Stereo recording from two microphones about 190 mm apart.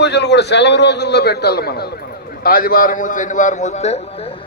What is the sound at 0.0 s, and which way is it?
A man's voice, 60° left (ahead or behind).